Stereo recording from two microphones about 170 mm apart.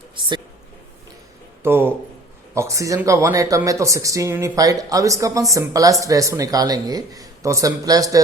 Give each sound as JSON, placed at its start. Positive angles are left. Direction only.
{"t": 1.6, "sound": "speech", "side_deg": -10}